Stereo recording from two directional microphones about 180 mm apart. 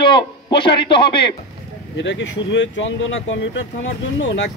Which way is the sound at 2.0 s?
85° left.